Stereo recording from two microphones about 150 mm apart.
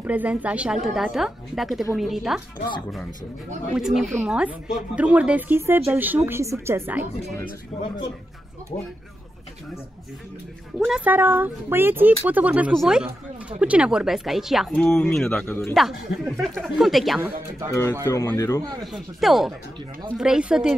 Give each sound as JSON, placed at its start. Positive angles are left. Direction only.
{"t": 0.0, "sound": "speech", "side_deg": -10}
{"t": 3.7, "sound": "speech", "side_deg": -5}
{"t": 7.7, "sound": "speech", "side_deg": 5}
{"t": 11.1, "sound": "speech", "side_deg": -10}
{"t": 15.4, "sound": "speech", "side_deg": 15}
{"t": 15.7, "sound": "speech", "side_deg": 0}
{"t": 18.0, "sound": "speech", "side_deg": 15}
{"t": 18.6, "sound": "a man's voice", "side_deg": -25}
{"t": 18.9, "sound": "speech", "side_deg": 0}